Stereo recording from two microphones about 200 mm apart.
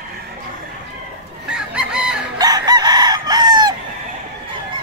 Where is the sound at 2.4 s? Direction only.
20° right (ahead or behind).